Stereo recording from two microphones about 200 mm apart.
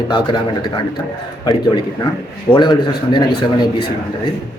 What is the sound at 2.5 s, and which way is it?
A man's voice, 20° left (ahead or behind).